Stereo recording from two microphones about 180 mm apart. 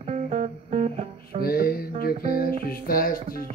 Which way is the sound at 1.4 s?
55° left (ahead or behind).